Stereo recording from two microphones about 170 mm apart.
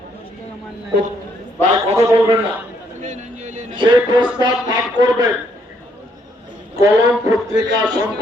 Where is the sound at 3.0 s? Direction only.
45° right (ahead or behind).